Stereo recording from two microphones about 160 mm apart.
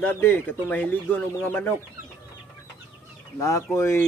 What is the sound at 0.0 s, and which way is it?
Speech, 15° left (ahead or behind).